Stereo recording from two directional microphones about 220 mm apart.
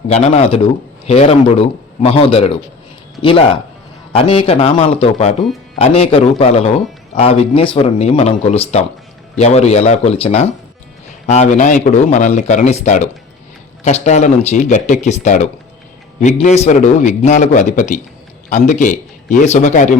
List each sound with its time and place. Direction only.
0.1 s a man's voice: 30° left (ahead or behind)